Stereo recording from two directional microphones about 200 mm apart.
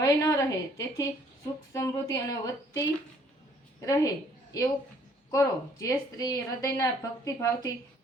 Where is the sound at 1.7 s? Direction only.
15° left (ahead or behind).